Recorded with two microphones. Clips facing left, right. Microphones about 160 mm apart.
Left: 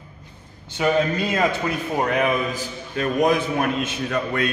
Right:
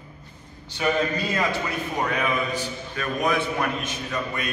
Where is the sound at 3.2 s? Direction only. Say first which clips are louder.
Left 5 dB; 40° left (ahead or behind).